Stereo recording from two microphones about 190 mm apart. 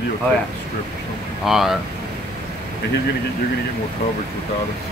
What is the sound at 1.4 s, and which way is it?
Speech, centre (ahead or behind).